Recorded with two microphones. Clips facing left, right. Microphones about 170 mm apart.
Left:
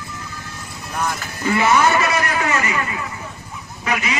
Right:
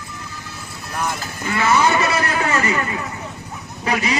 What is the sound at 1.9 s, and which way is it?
A man's voice, 30° right (ahead or behind).